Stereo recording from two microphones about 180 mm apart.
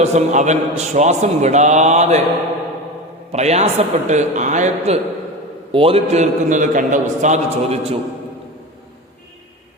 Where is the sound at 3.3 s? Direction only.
35° right (ahead or behind).